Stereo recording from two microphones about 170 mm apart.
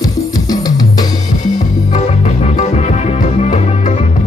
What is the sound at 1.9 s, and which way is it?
Music, 45° left (ahead or behind).